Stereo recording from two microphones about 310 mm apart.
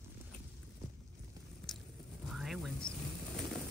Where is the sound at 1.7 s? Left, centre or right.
Centre.